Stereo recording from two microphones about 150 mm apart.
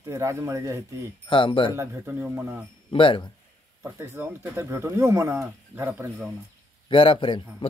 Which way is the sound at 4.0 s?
15° right (ahead or behind).